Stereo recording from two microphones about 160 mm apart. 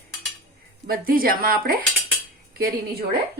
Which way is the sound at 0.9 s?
65° right (ahead or behind).